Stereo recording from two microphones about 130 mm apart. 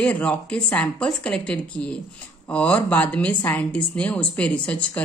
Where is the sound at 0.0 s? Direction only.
10° left (ahead or behind).